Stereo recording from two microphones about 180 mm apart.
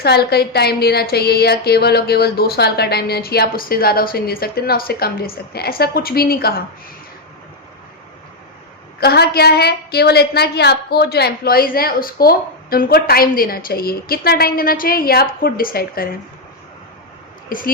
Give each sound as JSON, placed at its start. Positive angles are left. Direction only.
{"t": 0.0, "sound": "a woman's voice", "side_deg": 60}
{"t": 9.0, "sound": "a woman's voice", "side_deg": 65}
{"t": 17.5, "sound": "speech", "side_deg": 50}